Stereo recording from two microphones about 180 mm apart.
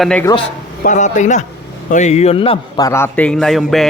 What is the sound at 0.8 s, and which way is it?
A man's voice, 45° left (ahead or behind).